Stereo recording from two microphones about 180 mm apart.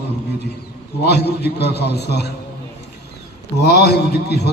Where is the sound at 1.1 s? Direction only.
65° left (ahead or behind).